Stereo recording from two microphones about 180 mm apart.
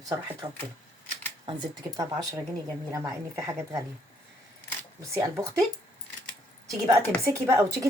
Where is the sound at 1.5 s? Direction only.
25° right (ahead or behind).